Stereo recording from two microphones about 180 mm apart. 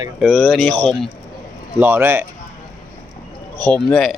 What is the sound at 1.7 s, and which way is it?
Speech, 10° right (ahead or behind).